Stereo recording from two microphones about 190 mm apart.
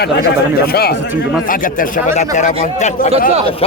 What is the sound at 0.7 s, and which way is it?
A man's voice, 55° left (ahead or behind).